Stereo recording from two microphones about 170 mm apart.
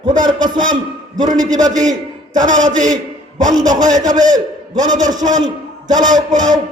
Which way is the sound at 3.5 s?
20° right (ahead or behind).